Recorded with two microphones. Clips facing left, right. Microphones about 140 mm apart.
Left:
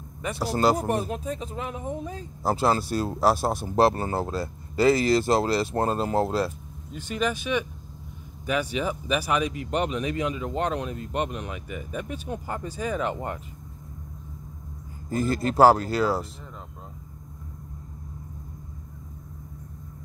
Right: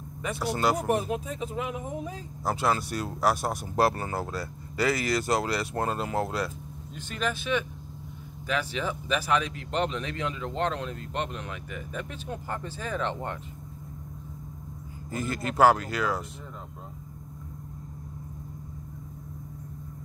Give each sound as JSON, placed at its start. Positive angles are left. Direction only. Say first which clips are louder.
{"t": 0.4, "sound": "speech", "louder": "left 4 dB", "side_deg": 35}
{"t": 0.8, "sound": "speech", "louder": "even", "side_deg": 0}
{"t": 2.4, "sound": "speech", "louder": "left 4 dB", "side_deg": 35}
{"t": 7.0, "sound": "speech", "louder": "left 4 dB", "side_deg": 10}
{"t": 15.0, "sound": "speech", "louder": "left 6 dB", "side_deg": 35}